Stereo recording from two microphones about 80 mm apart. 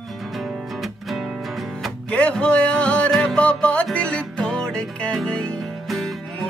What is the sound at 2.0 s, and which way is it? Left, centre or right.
Speech, centre.